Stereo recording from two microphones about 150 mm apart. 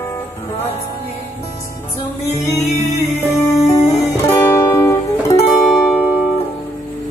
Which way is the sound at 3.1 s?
20° left (ahead or behind).